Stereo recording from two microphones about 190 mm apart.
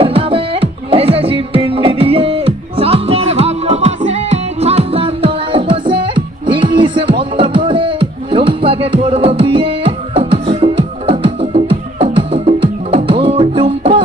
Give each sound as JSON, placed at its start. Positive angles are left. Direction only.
{"t": 0.0, "sound": "music", "side_deg": -30}